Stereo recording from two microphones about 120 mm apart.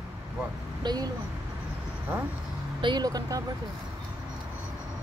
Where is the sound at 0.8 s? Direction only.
35° right (ahead or behind).